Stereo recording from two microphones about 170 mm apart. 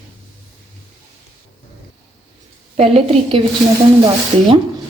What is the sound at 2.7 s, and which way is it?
Speech, 35° right (ahead or behind).